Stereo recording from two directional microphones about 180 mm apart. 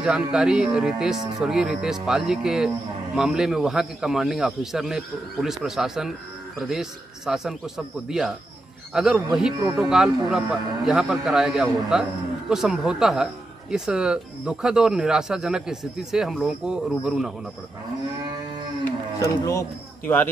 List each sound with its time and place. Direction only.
0.0 s a man's voice: 5° right (ahead or behind)
19.1 s speech: 15° left (ahead or behind)